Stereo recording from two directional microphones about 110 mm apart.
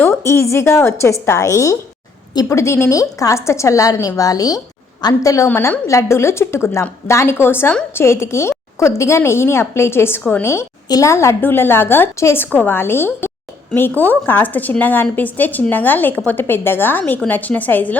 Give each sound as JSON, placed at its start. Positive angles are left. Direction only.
{"t": 0.0, "sound": "a woman's voice", "side_deg": 25}
{"t": 5.5, "sound": "a woman's voice", "side_deg": 15}